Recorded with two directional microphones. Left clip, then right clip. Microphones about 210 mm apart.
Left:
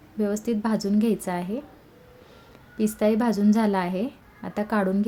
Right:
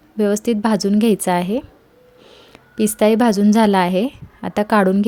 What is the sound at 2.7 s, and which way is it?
A woman's voice, 40° right (ahead or behind).